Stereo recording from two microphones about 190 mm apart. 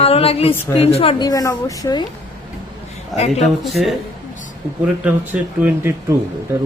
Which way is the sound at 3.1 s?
35° left (ahead or behind).